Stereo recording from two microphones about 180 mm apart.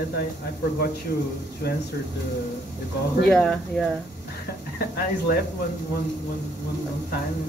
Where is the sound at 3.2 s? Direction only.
5° left (ahead or behind).